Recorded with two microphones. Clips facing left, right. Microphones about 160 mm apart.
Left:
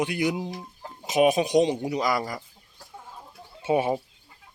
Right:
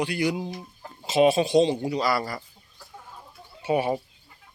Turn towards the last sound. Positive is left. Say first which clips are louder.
# left 1 dB
turn(degrees=25)  # may be behind; listen again after turning